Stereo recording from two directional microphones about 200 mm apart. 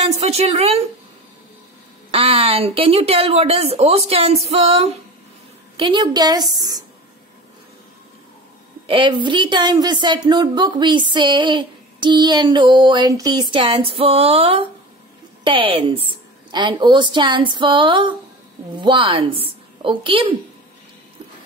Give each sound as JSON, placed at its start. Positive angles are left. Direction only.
{"t": 0.0, "sound": "a woman's voice", "side_deg": -30}
{"t": 2.0, "sound": "a woman's voice", "side_deg": -30}
{"t": 4.5, "sound": "female singing", "side_deg": -30}
{"t": 5.8, "sound": "a woman's voice", "side_deg": -25}
{"t": 8.8, "sound": "a woman's voice", "side_deg": -25}